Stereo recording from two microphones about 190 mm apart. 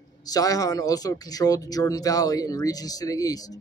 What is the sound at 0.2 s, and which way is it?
Speech, 20° left (ahead or behind).